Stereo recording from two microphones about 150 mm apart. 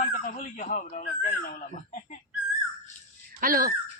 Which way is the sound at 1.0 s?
75° left (ahead or behind).